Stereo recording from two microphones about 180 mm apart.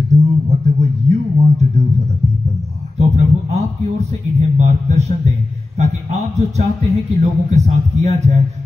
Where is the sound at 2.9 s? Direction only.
35° right (ahead or behind).